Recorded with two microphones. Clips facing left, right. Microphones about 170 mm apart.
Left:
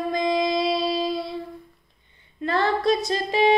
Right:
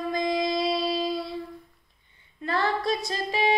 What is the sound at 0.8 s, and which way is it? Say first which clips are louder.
Music: left 3 dB; 70° left (ahead or behind).